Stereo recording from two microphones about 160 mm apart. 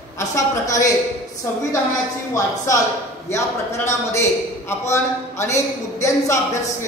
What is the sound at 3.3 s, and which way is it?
A man's voice, 15° left (ahead or behind).